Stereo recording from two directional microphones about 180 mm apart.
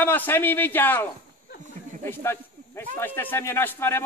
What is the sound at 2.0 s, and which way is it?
Snake, 15° left (ahead or behind).